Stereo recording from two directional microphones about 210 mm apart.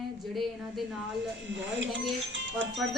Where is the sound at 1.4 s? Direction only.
60° right (ahead or behind).